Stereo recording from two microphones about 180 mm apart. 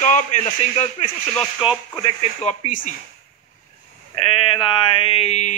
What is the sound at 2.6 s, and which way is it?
Speech, 45° left (ahead or behind).